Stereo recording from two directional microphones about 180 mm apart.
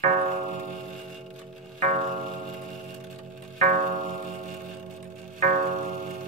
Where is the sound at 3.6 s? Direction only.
50° right (ahead or behind).